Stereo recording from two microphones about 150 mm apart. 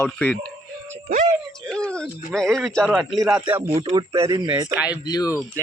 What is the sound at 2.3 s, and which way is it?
Speech, 5° left (ahead or behind).